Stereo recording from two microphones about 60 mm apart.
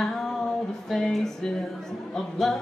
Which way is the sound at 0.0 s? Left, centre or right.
Centre.